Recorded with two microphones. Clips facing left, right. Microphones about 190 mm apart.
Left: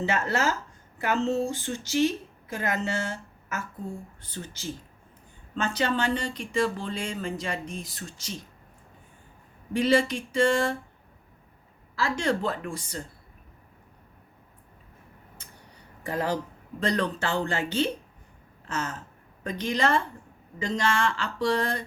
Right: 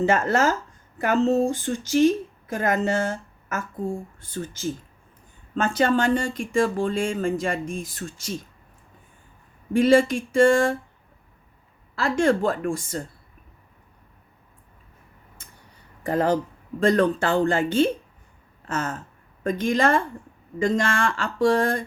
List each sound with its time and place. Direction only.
0.0 s a woman's voice: 50° right (ahead or behind)
9.7 s speech: 50° right (ahead or behind)
11.9 s speech: 55° right (ahead or behind)
16.0 s speech: 50° right (ahead or behind)